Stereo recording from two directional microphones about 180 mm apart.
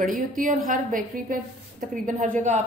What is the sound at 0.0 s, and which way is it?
A woman's voice, 50° right (ahead or behind).